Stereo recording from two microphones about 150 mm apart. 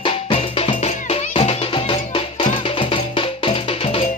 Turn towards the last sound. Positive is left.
turn(degrees=40)  # may be behind; listen again after turning